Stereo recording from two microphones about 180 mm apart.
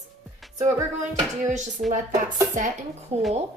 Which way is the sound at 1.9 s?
45° right (ahead or behind).